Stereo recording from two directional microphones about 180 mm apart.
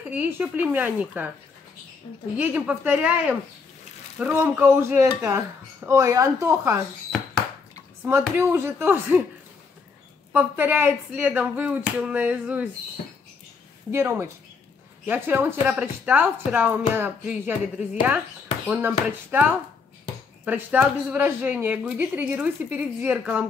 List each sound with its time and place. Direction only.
0.1 s a woman's voice: 10° right (ahead or behind)
2.3 s a woman's voice: 10° right (ahead or behind)
8.0 s a woman's voice: 10° right (ahead or behind)
10.3 s a woman's voice: 10° right (ahead or behind)
13.9 s a woman's voice: 15° right (ahead or behind)
20.4 s a woman's voice: 10° right (ahead or behind)